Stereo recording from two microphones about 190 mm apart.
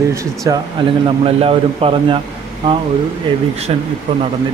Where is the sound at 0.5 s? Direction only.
25° right (ahead or behind).